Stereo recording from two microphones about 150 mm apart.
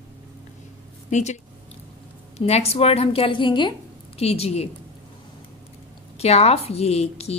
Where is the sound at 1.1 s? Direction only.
50° left (ahead or behind).